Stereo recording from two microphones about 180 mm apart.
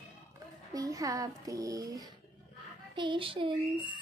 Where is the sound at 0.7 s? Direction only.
20° right (ahead or behind).